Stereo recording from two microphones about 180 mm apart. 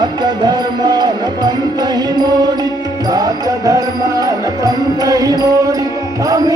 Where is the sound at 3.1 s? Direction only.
20° right (ahead or behind).